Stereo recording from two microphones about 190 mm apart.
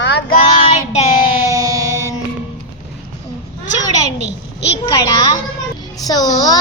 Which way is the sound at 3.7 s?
35° right (ahead or behind).